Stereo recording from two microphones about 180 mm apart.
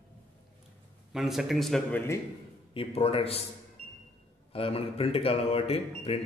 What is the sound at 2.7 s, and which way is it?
Speech, 30° left (ahead or behind).